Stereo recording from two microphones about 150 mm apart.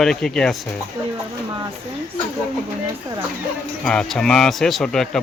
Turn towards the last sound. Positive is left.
turn(degrees=5)  # may be behind; listen again after turning